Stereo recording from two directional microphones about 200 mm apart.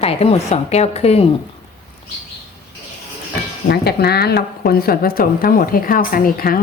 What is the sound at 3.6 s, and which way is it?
Speech, 55° left (ahead or behind).